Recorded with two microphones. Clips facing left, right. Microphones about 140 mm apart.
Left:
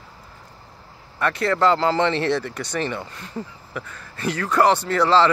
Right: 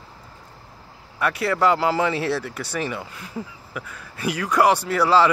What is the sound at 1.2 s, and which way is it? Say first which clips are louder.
Speech: left 1 dB; 10° right (ahead or behind).